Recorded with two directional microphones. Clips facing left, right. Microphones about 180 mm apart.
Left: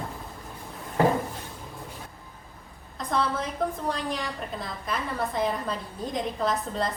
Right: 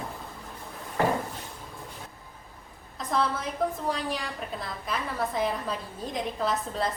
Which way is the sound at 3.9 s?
Centre (ahead or behind).